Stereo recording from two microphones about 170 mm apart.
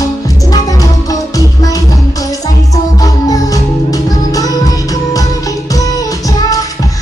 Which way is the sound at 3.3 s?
20° left (ahead or behind).